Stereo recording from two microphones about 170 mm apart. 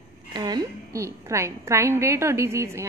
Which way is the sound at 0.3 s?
25° right (ahead or behind).